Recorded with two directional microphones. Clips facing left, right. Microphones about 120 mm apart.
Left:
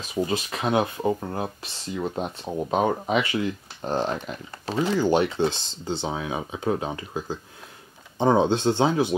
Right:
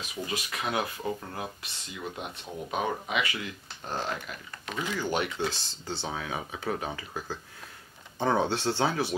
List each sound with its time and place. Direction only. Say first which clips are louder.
0.0 s speech: left 9 dB; 30° left (ahead or behind)
5.9 s speech: left 6 dB; 20° left (ahead or behind)